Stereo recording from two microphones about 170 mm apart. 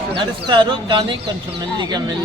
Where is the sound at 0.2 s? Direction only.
30° right (ahead or behind).